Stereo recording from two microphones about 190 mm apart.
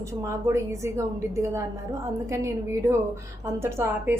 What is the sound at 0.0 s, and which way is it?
A woman's voice, 15° right (ahead or behind).